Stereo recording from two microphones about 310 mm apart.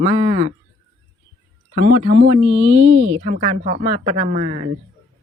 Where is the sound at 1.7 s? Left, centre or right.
Right.